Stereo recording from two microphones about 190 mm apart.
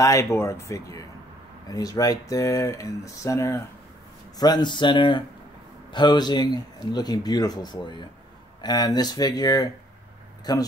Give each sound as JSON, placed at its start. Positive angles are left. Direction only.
{"t": 0.0, "sound": "a man's voice", "side_deg": 15}